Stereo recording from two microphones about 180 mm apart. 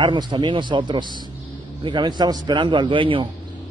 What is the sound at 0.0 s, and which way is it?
A man's voice, 25° right (ahead or behind).